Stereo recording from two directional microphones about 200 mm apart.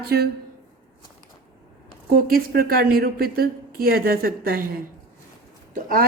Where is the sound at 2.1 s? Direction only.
45° right (ahead or behind).